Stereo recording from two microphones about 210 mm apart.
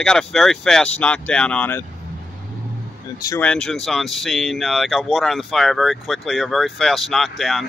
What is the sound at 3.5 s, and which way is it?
Speech, 5° left (ahead or behind).